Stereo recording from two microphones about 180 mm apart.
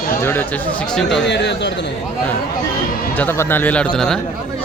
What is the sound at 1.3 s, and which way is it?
Speech, 75° left (ahead or behind).